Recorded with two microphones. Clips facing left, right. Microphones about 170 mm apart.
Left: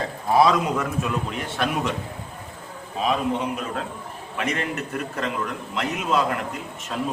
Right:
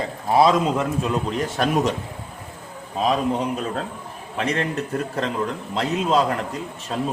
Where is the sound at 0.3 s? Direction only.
25° right (ahead or behind).